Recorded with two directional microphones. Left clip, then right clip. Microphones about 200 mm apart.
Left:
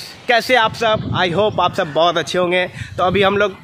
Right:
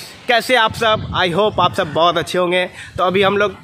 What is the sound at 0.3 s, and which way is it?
A man's voice, centre (ahead or behind).